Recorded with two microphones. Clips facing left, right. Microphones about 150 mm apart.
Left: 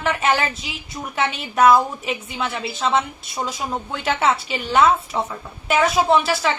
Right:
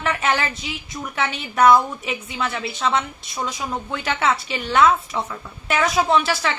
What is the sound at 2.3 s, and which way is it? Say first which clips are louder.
A woman's voice: even; centre (ahead or behind).